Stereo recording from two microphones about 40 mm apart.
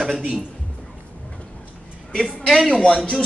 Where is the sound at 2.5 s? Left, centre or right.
Centre.